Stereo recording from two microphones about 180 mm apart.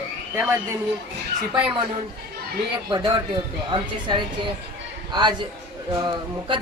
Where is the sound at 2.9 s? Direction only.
25° right (ahead or behind).